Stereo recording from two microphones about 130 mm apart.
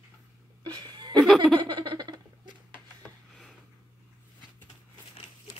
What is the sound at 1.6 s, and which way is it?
Laughter, 35° right (ahead or behind).